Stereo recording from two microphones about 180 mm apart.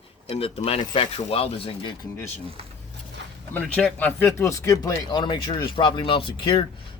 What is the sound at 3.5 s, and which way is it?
Speech, 10° left (ahead or behind).